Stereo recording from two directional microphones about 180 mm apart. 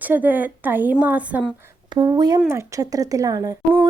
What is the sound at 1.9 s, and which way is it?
Speech, 25° right (ahead or behind).